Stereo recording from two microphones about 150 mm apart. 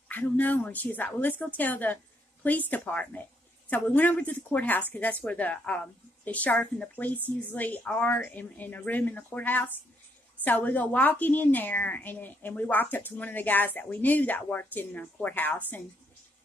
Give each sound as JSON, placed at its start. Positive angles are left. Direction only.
{"t": 0.1, "sound": "a woman's voice", "side_deg": 10}